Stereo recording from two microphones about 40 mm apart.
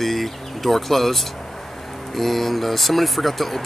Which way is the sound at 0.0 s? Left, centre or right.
Centre.